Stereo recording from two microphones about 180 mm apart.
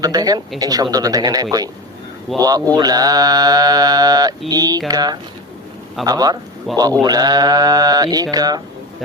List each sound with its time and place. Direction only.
0.0 s mantra: 20° right (ahead or behind)
2.3 s speech: centre (ahead or behind)
2.7 s mantra: 20° right (ahead or behind)
6.7 s speech: centre (ahead or behind)
7.0 s mantra: 20° right (ahead or behind)